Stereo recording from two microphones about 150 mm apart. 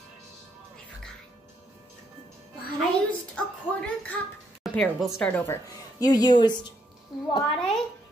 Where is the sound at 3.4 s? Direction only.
10° left (ahead or behind).